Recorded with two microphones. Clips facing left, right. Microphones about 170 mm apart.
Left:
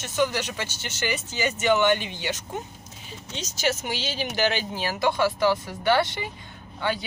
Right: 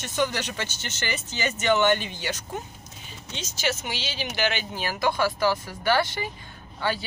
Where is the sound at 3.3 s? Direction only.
40° left (ahead or behind).